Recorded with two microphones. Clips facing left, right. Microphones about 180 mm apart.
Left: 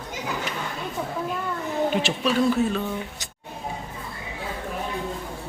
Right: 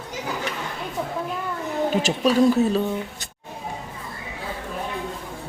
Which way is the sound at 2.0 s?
45° right (ahead or behind).